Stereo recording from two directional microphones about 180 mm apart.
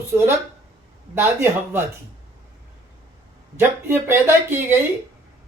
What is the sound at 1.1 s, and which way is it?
Speech, 15° right (ahead or behind).